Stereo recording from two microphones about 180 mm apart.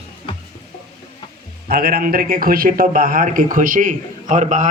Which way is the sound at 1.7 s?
55° right (ahead or behind).